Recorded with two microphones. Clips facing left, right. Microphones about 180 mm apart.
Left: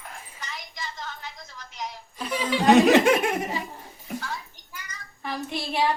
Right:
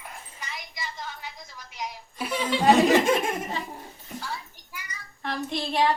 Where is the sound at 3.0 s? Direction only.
70° left (ahead or behind).